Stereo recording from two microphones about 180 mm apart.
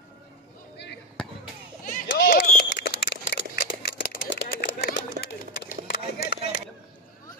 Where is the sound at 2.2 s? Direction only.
50° left (ahead or behind); by 5.7 s 70° left (ahead or behind).